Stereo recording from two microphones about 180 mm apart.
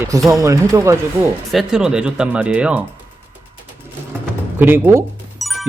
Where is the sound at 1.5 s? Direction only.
5° right (ahead or behind).